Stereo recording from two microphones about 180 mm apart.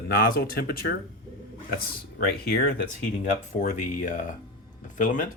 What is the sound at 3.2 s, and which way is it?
Speech, 40° left (ahead or behind).